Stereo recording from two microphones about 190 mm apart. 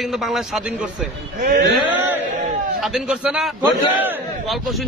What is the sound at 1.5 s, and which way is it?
Speech, 65° right (ahead or behind).